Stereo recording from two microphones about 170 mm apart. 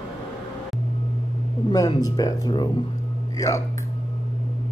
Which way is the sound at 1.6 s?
20° left (ahead or behind).